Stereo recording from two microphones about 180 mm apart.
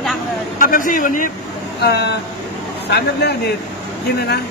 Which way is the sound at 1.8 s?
65° left (ahead or behind).